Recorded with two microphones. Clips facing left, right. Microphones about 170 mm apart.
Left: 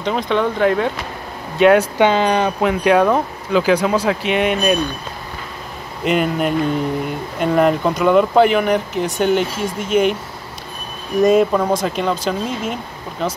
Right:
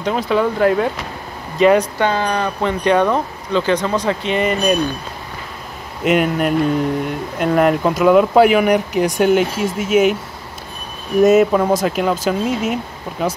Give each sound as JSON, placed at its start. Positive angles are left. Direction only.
{"t": 0.0, "sound": "speech", "side_deg": -5}
{"t": 2.0, "sound": "speech", "side_deg": 20}
{"t": 2.6, "sound": "speech", "side_deg": 5}
{"t": 6.0, "sound": "speech", "side_deg": 0}
{"t": 11.1, "sound": "speech", "side_deg": -5}